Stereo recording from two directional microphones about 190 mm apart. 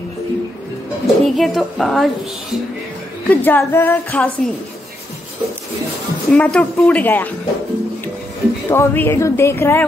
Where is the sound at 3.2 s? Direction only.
10° left (ahead or behind).